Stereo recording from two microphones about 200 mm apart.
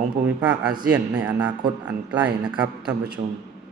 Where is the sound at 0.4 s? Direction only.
5° right (ahead or behind).